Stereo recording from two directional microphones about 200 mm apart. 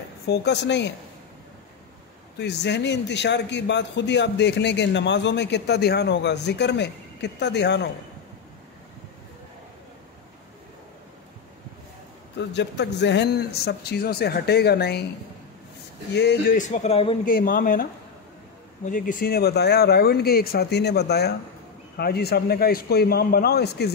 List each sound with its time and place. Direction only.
0.3 s a man's voice: 55° left (ahead or behind)
2.3 s a man's voice: 60° left (ahead or behind)
12.5 s speech: 60° left (ahead or behind)
16.1 s a man's voice: 60° left (ahead or behind)
16.5 s a man's voice: 40° left (ahead or behind)
17.2 s speech: 45° left (ahead or behind)
18.9 s speech: 40° left (ahead or behind)